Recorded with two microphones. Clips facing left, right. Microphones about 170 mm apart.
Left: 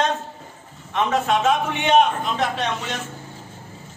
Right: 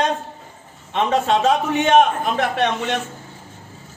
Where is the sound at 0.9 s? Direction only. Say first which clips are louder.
Right 2 dB; 30° right (ahead or behind); by 3.0 s 60° right (ahead or behind).